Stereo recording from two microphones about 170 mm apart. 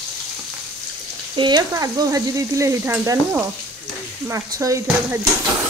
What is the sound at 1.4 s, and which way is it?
Stir, 25° right (ahead or behind).